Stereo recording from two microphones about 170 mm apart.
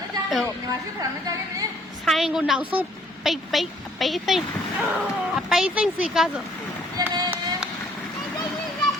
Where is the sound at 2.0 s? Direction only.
Centre (ahead or behind).